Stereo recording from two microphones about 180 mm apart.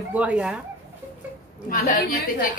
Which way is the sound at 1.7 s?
50° left (ahead or behind).